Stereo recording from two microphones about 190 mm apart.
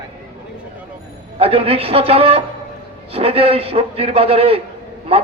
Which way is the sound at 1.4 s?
30° right (ahead or behind).